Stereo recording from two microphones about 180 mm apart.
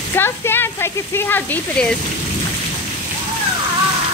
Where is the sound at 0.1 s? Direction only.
10° left (ahead or behind).